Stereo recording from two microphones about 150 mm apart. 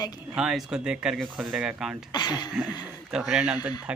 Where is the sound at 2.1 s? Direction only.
25° left (ahead or behind).